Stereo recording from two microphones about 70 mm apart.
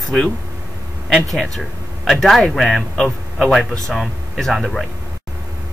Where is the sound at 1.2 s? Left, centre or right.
Centre.